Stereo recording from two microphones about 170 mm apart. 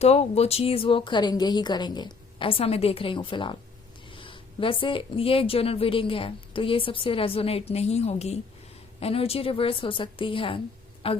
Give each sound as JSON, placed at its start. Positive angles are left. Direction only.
{"t": 0.0, "sound": "a woman's voice", "side_deg": 40}